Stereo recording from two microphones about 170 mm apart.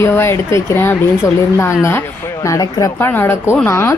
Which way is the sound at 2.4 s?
20° left (ahead or behind).